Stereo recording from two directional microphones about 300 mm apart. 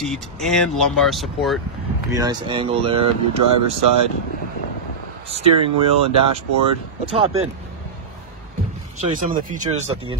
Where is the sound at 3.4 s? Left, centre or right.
Right.